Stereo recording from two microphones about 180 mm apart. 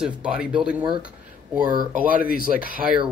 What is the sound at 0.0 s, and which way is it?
Speech, 5° right (ahead or behind).